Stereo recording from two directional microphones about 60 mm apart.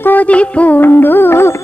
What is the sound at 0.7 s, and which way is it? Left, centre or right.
Music, left.